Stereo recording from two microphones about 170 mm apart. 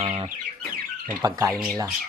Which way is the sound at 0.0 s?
35° right (ahead or behind).